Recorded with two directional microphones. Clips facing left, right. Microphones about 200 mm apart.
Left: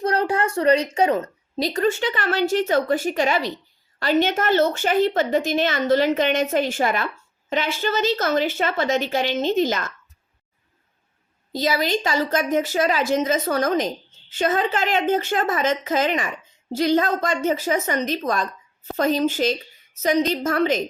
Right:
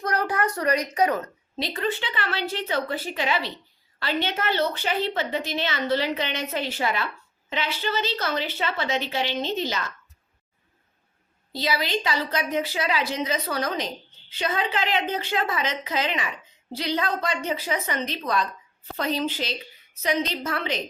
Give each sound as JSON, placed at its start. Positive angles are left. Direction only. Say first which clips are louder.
{"t": 0.0, "sound": "a woman's voice", "louder": "left 4 dB", "side_deg": 25}
{"t": 11.5, "sound": "a woman's voice", "louder": "left 5 dB", "side_deg": 45}